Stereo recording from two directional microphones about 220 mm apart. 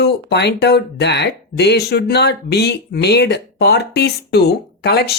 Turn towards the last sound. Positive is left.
turn(degrees=50)  # may be behind; listen again after turning